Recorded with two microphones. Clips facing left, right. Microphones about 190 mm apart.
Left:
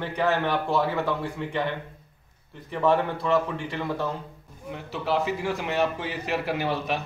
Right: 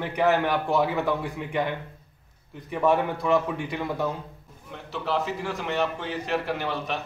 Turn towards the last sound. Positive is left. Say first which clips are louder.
# left 2 dB
turn(degrees=5)  # may be behind; listen again after turning